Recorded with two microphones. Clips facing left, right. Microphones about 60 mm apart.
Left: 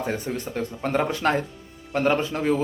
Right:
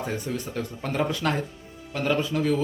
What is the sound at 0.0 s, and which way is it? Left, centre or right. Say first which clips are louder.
A man's voice: left 2 dB; left.